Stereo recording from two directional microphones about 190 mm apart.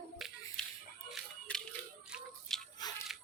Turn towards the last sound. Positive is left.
turn(degrees=20)  # may be behind; listen again after turning